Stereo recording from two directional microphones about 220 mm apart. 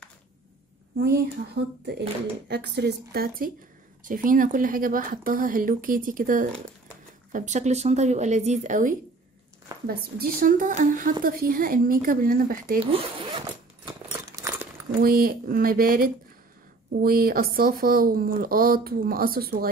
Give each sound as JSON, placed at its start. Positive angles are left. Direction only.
{"t": 0.9, "sound": "a woman's voice", "side_deg": -50}
{"t": 12.8, "sound": "speech", "side_deg": -25}
{"t": 13.8, "sound": "a sound", "side_deg": -15}
{"t": 15.0, "sound": "a woman's voice", "side_deg": -40}